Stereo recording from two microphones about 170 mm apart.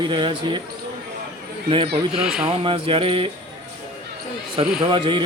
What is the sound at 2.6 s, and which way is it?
Music, 30° right (ahead or behind).